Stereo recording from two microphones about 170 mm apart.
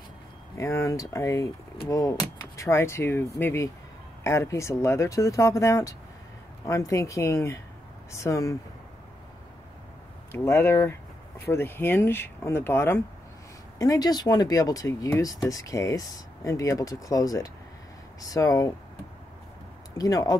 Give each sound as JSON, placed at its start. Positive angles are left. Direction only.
{"t": 0.6, "sound": "speech", "side_deg": 15}
{"t": 10.3, "sound": "speech", "side_deg": 15}
{"t": 20.0, "sound": "speech", "side_deg": 20}